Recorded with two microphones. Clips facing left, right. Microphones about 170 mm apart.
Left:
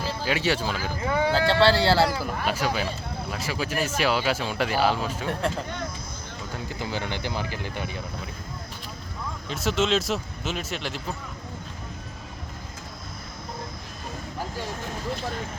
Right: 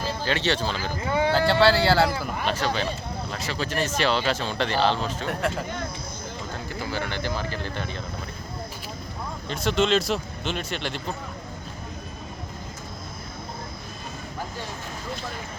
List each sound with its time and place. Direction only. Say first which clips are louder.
0.0 s speech: even; 10° left (ahead or behind)
1.3 s speech: right 1 dB; centre (ahead or behind)
6.7 s speech: even; 20° left (ahead or behind)
9.5 s speech: right 2 dB; centre (ahead or behind)